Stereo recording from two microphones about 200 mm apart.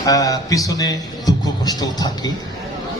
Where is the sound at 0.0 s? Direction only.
15° left (ahead or behind).